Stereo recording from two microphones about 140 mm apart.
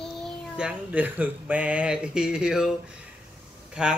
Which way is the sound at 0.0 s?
5° left (ahead or behind).